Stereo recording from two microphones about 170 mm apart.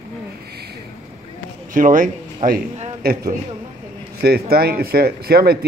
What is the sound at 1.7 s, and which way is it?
Speech, 50° right (ahead or behind).